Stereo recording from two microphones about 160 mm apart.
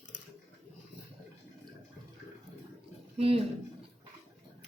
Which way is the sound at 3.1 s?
35° right (ahead or behind).